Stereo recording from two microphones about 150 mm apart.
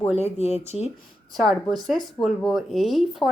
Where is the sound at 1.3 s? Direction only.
Centre (ahead or behind).